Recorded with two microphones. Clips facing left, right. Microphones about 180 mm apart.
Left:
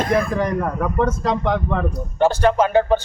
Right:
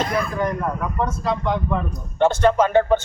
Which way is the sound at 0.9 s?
90° left.